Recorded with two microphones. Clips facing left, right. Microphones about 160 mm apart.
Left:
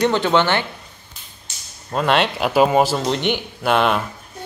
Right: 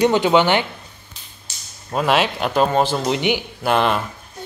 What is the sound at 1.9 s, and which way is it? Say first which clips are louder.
Speech: even; 5° right (ahead or behind).